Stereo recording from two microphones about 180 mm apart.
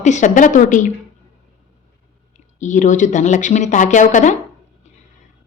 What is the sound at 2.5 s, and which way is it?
Speech, 45° left (ahead or behind).